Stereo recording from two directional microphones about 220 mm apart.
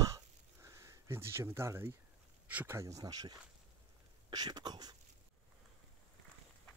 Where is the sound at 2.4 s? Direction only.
10° right (ahead or behind).